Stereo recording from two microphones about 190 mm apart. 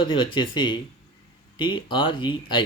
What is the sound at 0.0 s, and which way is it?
Speech, 25° left (ahead or behind).